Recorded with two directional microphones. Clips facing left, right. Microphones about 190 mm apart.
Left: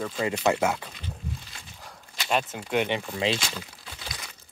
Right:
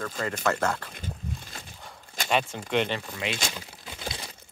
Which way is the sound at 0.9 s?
45° right (ahead or behind).